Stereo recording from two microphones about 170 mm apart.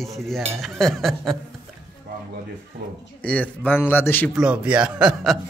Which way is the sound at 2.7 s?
60° right (ahead or behind).